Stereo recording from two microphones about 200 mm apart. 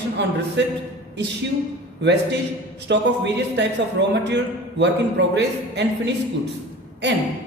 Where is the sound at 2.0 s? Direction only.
60° right (ahead or behind).